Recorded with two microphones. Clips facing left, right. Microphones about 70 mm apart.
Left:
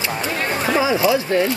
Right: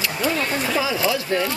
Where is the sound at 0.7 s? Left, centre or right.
Left.